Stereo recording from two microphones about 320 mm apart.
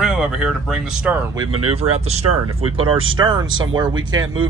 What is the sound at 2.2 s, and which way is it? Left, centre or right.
Speech, right.